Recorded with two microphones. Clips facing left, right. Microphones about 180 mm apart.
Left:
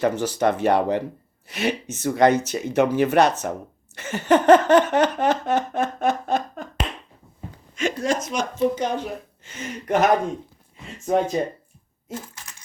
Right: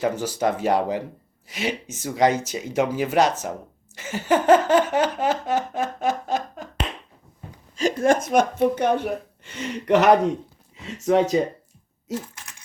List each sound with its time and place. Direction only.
0.0 s a sound: 10° right (ahead or behind)
7.8 s speech: 40° right (ahead or behind)
8.0 s speech: 55° right (ahead or behind); by 10.3 s 70° right (ahead or behind)
10.8 s speech: 85° right
12.1 s typing: 80° right